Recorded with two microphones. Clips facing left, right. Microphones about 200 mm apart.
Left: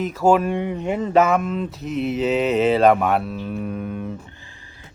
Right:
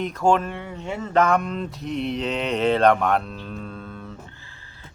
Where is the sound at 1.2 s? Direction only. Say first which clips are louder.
Left 2 dB; 5° left (ahead or behind).